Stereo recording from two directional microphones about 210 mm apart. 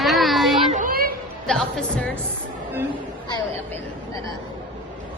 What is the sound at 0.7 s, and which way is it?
Children playing, 40° right (ahead or behind).